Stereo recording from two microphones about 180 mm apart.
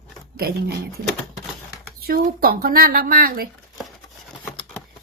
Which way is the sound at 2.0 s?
55° right (ahead or behind).